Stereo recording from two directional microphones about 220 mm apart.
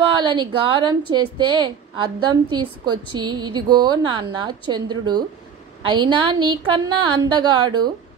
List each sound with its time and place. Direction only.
0.2 s a woman's voice: 20° right (ahead or behind)